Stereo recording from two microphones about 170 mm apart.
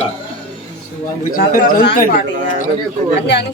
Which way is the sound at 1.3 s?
55° left (ahead or behind).